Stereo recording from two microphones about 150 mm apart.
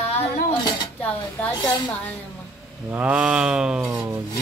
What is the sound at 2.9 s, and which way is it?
Speech, 10° right (ahead or behind).